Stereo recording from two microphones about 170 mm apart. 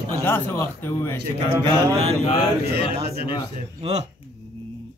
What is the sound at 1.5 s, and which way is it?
Mantra, 35° right (ahead or behind).